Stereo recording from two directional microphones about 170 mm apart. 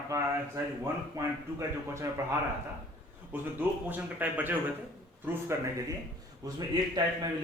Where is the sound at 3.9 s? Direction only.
10° right (ahead or behind).